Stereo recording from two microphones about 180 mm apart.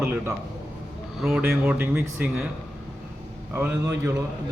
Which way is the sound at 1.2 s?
5° right (ahead or behind).